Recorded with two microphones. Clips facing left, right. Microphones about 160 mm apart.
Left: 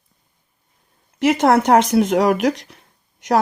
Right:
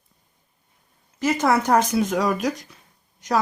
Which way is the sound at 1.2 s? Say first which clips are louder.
Left 6 dB; 70° left (ahead or behind).